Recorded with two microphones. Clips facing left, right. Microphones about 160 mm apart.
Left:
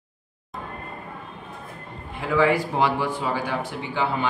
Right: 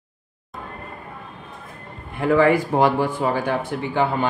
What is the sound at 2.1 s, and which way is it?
Speech, 50° right (ahead or behind).